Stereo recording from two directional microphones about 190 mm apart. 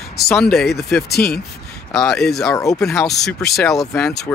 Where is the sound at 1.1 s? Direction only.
55° left (ahead or behind).